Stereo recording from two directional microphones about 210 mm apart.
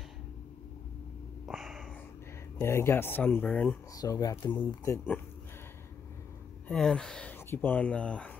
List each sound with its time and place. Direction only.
1.4 s a sound: centre (ahead or behind)
2.6 s speech: 10° left (ahead or behind)
6.7 s speech: 5° left (ahead or behind)